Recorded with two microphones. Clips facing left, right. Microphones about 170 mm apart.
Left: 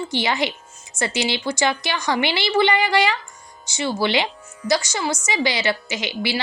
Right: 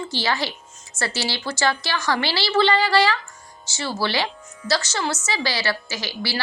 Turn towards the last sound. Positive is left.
turn(degrees=20)  # may be behind; listen again after turning